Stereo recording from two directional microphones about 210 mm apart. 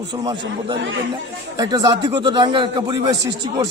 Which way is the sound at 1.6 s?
20° right (ahead or behind).